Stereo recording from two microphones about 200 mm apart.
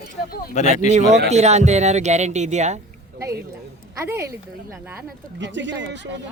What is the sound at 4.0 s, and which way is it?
Speech, 15° right (ahead or behind).